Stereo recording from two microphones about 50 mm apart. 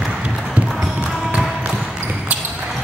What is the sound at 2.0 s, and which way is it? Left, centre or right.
Basketball bounce, right.